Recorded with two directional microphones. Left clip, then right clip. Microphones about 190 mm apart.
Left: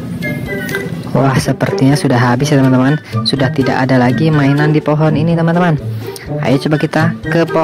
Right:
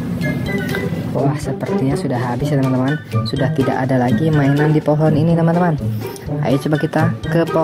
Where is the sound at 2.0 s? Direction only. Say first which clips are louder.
Left 8 dB; 25° left (ahead or behind); by 7.4 s 10° left (ahead or behind).